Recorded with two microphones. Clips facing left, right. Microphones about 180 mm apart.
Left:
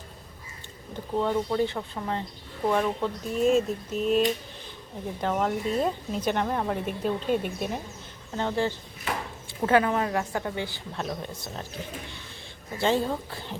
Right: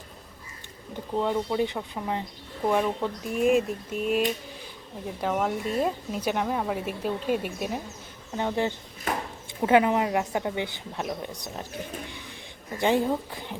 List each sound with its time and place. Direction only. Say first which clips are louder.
1.1 s speech: even; 10° right (ahead or behind)
12.7 s speech: right 2 dB; 15° right (ahead or behind)